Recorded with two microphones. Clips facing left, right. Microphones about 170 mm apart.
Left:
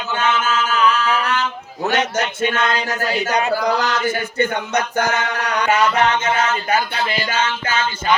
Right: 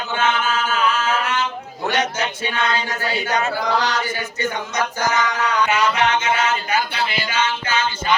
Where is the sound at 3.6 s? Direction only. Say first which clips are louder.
Left 2 dB; 45° left (ahead or behind); by 5.7 s 65° left (ahead or behind).